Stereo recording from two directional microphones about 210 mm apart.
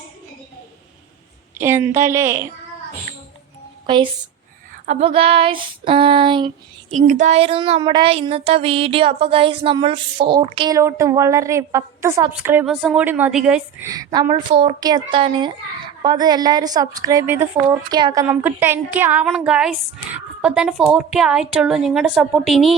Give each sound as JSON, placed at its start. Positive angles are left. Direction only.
{"t": 1.5, "sound": "a woman's voice", "side_deg": -10}
{"t": 3.8, "sound": "speech", "side_deg": -20}
{"t": 6.9, "sound": "a woman's voice", "side_deg": -35}